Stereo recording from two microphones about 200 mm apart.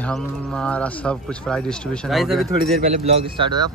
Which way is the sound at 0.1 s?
5° left (ahead or behind).